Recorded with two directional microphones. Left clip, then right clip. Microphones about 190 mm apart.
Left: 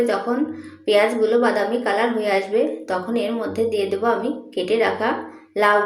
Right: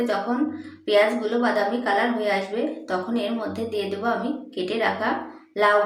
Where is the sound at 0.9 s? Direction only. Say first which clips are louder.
Left 3 dB; 10° left (ahead or behind).